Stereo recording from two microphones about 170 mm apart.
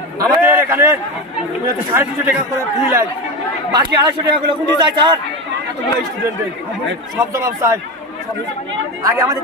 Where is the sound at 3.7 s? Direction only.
25° right (ahead or behind).